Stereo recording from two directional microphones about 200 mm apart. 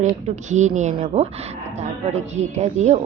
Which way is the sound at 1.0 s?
30° right (ahead or behind).